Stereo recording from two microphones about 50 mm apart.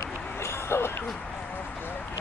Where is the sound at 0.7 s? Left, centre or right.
Left.